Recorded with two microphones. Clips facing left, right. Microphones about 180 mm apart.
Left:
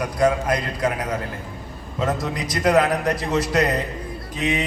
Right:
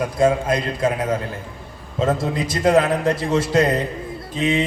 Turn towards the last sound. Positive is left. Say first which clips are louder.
# right 3 dB
turn(degrees=-25)  # may be behind; listen again after turning